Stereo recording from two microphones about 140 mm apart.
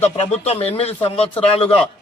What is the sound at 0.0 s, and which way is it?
A man's voice, 50° left (ahead or behind).